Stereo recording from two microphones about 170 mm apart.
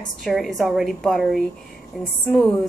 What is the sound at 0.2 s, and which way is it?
A woman's voice, centre (ahead or behind).